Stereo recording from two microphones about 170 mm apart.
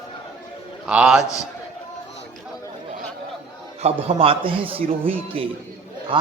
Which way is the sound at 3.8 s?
35° right (ahead or behind).